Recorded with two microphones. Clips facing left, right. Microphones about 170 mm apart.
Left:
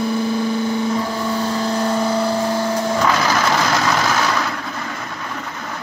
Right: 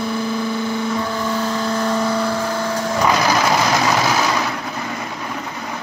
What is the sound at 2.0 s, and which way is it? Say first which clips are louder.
Vehicle: left 1 dB; 25° left (ahead or behind).